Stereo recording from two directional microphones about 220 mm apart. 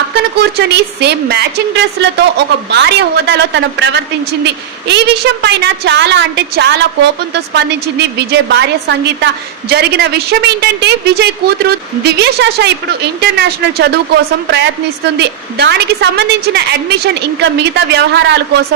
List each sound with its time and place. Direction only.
0.3 s a woman's voice: 50° right (ahead or behind)